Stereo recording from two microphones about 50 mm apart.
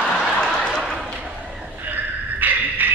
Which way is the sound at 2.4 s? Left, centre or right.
Right.